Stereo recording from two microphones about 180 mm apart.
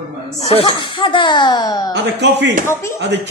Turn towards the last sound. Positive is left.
turn(degrees=-75)  # may be behind; listen again after turning